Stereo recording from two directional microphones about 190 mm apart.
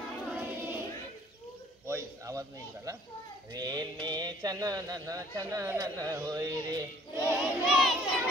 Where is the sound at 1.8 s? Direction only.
15° right (ahead or behind).